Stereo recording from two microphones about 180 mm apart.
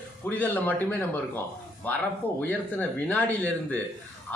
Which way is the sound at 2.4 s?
10° left (ahead or behind).